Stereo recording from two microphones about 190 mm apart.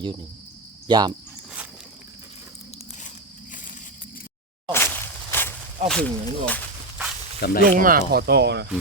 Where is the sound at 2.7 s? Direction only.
40° left (ahead or behind).